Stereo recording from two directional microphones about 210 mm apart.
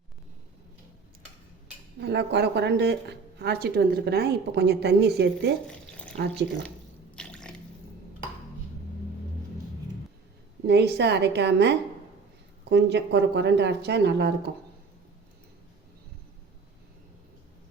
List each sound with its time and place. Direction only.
2.0 s speech: 55° right (ahead or behind)
5.6 s a sound: 5° left (ahead or behind)
7.2 s drip: 5° left (ahead or behind)
10.7 s speech: 55° right (ahead or behind)